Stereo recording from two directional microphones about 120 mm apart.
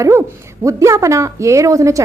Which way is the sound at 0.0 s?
25° right (ahead or behind).